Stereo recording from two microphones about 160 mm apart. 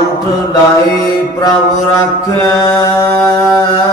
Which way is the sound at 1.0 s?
25° left (ahead or behind).